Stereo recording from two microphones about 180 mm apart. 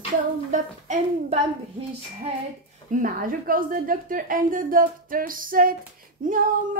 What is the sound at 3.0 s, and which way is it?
A woman's voice, 50° right (ahead or behind).